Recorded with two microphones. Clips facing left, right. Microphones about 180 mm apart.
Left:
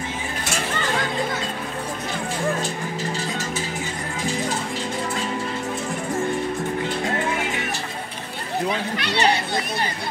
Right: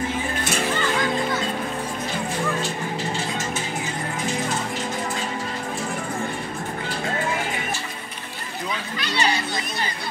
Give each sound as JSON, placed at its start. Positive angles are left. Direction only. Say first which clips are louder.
{"t": 8.6, "sound": "chatter", "louder": "left 2 dB", "side_deg": 65}